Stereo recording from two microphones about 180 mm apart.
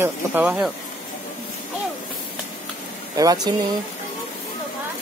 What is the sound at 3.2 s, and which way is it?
Speech, 20° right (ahead or behind).